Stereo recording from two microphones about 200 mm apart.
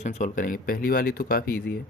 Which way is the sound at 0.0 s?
35° left (ahead or behind).